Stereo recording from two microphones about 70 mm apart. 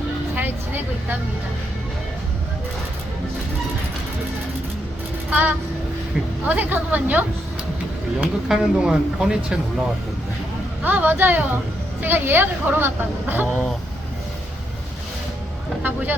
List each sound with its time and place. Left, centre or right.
0.3 s a sound: right
5.3 s a woman's voice: right
8.4 s speech: centre
10.8 s a woman's voice: right
15.8 s speech: right